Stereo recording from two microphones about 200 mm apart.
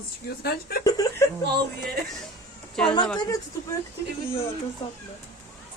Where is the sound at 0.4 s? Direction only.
50° left (ahead or behind).